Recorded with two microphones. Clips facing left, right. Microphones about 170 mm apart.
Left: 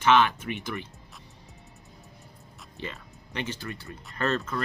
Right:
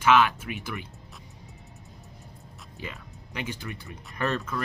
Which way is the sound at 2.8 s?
10° right (ahead or behind).